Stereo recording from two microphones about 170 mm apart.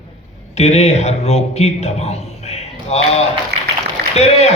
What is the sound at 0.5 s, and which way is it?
A man's voice, 40° left (ahead or behind).